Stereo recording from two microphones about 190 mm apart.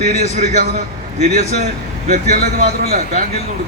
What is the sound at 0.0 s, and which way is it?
A man's voice, 40° right (ahead or behind).